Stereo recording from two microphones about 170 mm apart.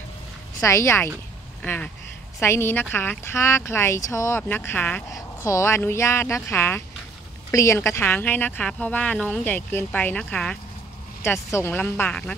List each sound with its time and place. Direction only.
0.6 s speech: 20° left (ahead or behind)